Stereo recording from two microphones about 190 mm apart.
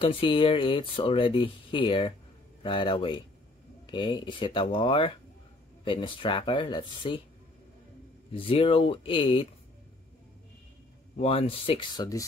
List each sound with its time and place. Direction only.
0.0 s speech: 30° left (ahead or behind)
8.4 s speech: 30° left (ahead or behind)
11.1 s speech: 30° left (ahead or behind)